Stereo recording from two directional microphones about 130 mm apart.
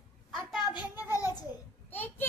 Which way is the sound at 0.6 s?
30° left (ahead or behind).